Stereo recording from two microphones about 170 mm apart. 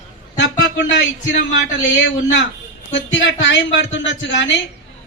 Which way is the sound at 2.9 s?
90° left.